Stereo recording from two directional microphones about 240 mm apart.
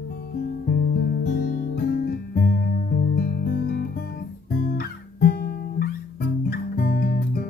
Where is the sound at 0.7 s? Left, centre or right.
Left.